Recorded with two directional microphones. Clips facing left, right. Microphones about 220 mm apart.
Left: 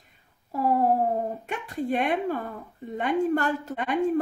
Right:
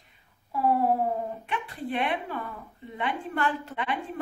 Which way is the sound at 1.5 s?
45° left (ahead or behind).